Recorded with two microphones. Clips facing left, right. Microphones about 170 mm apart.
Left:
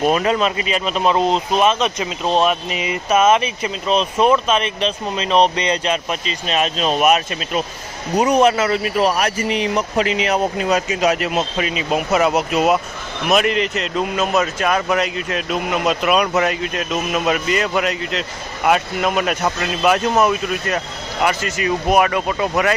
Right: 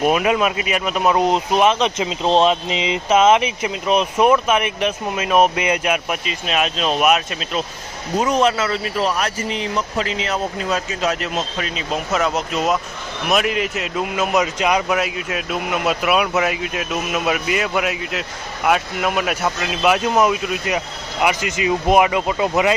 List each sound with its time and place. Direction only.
0.0 s speech: 10° right (ahead or behind)
8.1 s speech: 10° left (ahead or behind)
10.3 s a man's voice: 15° left (ahead or behind); by 22.7 s 15° right (ahead or behind)